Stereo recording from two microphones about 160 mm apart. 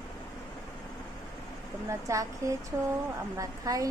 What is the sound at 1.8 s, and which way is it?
A woman's voice, 20° right (ahead or behind).